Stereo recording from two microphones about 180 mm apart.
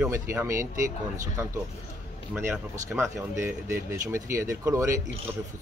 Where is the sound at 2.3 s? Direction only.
15° right (ahead or behind).